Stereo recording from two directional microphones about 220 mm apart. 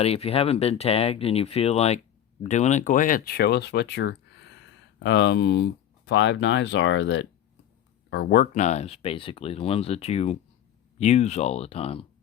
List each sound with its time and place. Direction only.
0.0 s speech: 25° left (ahead or behind)